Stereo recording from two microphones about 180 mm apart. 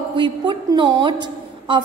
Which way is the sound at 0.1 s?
25° right (ahead or behind).